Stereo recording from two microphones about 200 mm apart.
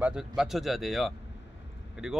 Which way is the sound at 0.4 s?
Centre (ahead or behind).